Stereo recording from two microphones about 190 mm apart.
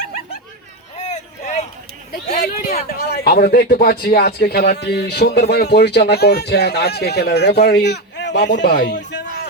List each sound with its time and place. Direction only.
0.9 s vehicle: 35° left (ahead or behind)
2.4 s speech: 50° left (ahead or behind)